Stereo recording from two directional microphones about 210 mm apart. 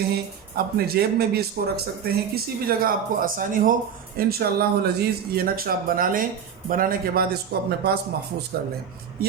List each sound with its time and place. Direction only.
0.1 s speech: 45° right (ahead or behind)